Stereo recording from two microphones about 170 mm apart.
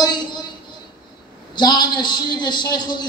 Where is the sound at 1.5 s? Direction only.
25° left (ahead or behind).